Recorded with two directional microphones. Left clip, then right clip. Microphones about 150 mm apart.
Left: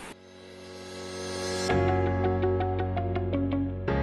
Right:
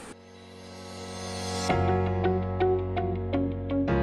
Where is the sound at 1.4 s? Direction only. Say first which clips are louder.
Even; centre (ahead or behind).